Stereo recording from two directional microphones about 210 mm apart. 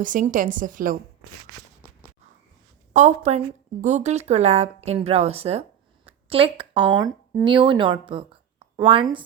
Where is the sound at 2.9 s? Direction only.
35° right (ahead or behind).